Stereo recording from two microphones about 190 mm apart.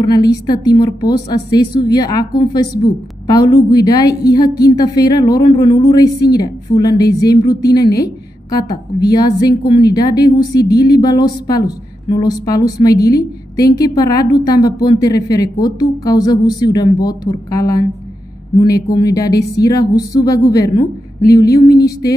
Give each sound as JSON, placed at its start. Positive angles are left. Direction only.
{"t": 0.0, "sound": "speech", "side_deg": 20}
{"t": 7.7, "sound": "a woman's voice", "side_deg": 55}
{"t": 8.0, "sound": "speech", "side_deg": 20}
{"t": 18.9, "sound": "speech", "side_deg": 20}